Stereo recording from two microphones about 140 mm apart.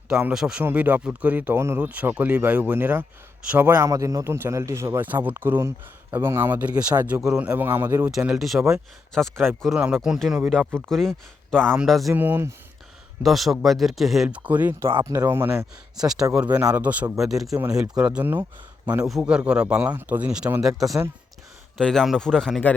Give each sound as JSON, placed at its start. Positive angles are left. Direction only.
{"t": 0.1, "sound": "a man's voice", "side_deg": -5}
{"t": 8.0, "sound": "speech", "side_deg": -5}
{"t": 12.1, "sound": "a man's voice", "side_deg": -15}
{"t": 13.2, "sound": "speech", "side_deg": 0}
{"t": 16.0, "sound": "a man's voice", "side_deg": -5}